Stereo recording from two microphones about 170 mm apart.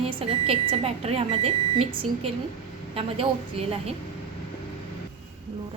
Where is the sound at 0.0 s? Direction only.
35° right (ahead or behind).